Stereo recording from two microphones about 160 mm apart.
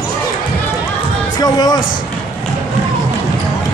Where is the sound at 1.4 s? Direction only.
25° left (ahead or behind).